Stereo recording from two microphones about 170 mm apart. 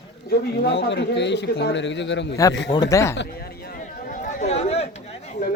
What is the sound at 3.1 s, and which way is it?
Chatter, 65° left (ahead or behind).